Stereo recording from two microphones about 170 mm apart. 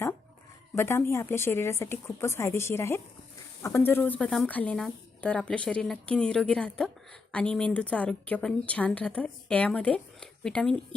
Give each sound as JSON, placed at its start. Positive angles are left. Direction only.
{"t": 0.8, "sound": "a woman's voice", "side_deg": 15}